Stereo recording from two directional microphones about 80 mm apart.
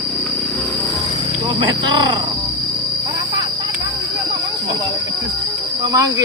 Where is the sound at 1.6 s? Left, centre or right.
Right.